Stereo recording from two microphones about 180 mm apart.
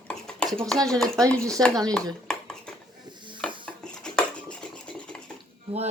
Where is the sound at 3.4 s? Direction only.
5° left (ahead or behind).